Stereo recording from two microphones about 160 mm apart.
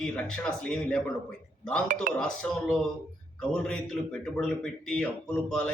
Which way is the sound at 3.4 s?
5° left (ahead or behind).